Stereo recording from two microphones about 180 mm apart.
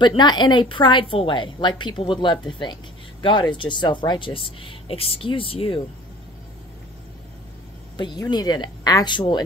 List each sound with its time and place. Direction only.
0.0 s a woman's voice: 25° left (ahead or behind)
8.0 s a woman's voice: 25° left (ahead or behind)